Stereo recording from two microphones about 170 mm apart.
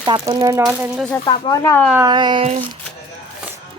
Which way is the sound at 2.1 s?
25° right (ahead or behind).